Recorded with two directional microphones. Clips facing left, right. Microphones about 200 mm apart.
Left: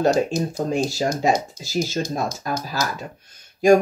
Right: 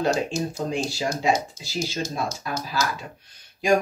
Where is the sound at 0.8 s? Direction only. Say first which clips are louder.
Left 3 dB; 45° left (ahead or behind).